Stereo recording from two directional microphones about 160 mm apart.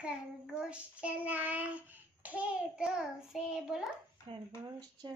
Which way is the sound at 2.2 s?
10° right (ahead or behind).